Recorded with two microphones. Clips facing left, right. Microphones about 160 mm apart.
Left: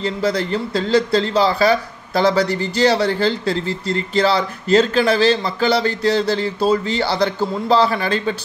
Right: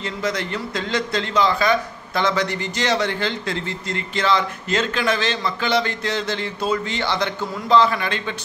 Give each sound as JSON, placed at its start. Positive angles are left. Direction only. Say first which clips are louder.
{"t": 0.0, "sound": "speech", "louder": "left 5 dB", "side_deg": 35}